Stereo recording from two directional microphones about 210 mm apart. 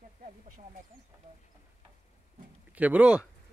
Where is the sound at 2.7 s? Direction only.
5° right (ahead or behind).